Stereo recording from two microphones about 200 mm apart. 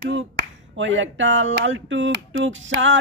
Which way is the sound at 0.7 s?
70° right (ahead or behind).